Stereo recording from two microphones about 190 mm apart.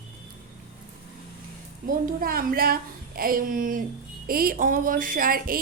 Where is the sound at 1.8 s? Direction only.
50° right (ahead or behind).